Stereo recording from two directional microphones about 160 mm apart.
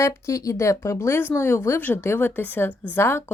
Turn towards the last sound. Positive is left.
turn(degrees=15)  # may be behind; listen again after turning